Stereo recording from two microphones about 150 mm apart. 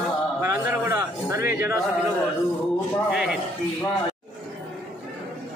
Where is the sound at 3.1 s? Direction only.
5° right (ahead or behind).